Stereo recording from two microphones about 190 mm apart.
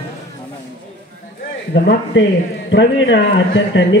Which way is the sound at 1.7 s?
60° left (ahead or behind).